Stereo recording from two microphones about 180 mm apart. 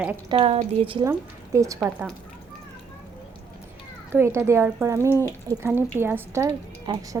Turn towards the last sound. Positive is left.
turn(degrees=-20)  # may be behind; listen again after turning